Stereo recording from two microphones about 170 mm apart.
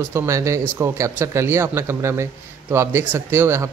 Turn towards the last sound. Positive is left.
turn(degrees=-15)  # may be behind; listen again after turning